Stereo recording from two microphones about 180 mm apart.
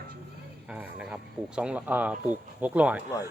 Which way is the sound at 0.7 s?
10° right (ahead or behind).